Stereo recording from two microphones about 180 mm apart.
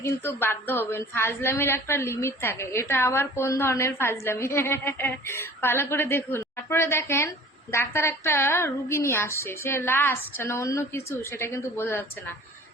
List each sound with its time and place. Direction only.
0.0 s a woman's voice: 15° left (ahead or behind)